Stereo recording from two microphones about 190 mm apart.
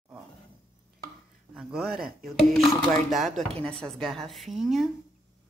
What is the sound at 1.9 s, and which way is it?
Speech, 55° right (ahead or behind).